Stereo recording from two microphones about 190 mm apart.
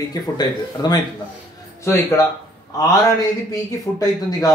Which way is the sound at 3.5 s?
20° left (ahead or behind).